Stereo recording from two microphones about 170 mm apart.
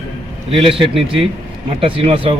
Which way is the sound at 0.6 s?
30° right (ahead or behind).